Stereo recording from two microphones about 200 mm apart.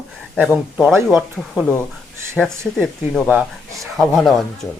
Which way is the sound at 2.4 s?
5° left (ahead or behind).